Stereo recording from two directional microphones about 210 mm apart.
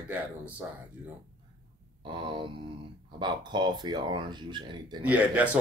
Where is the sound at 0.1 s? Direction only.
5° right (ahead or behind).